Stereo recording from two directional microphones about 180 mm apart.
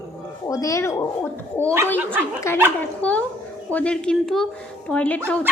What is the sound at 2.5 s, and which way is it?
A woman's voice, 15° left (ahead or behind).